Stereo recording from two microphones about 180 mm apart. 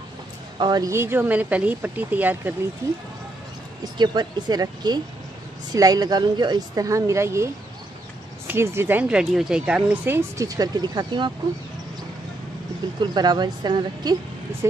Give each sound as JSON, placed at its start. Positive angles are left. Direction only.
{"t": 0.6, "sound": "a woman's voice", "side_deg": -20}
{"t": 3.8, "sound": "a woman's voice", "side_deg": -25}
{"t": 13.0, "sound": "a woman's voice", "side_deg": -25}